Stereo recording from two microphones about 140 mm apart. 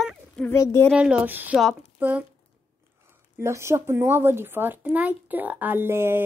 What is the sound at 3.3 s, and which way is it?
Speech, 20° right (ahead or behind).